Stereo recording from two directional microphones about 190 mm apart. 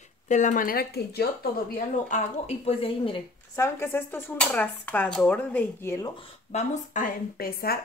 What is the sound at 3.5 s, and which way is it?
Dishes, 15° left (ahead or behind).